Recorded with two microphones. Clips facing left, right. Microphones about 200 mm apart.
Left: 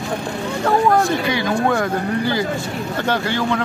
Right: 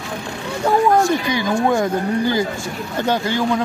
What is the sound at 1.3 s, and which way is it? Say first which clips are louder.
Speech: right 1 dB; 15° right (ahead or behind).